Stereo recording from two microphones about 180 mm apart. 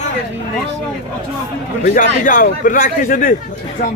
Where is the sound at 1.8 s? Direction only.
50° left (ahead or behind).